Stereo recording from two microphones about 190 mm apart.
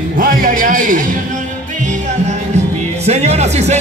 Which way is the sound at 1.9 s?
35° right (ahead or behind).